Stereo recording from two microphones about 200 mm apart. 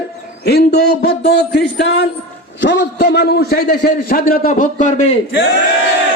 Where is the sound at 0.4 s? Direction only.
55° left (ahead or behind); by 5.1 s 35° left (ahead or behind).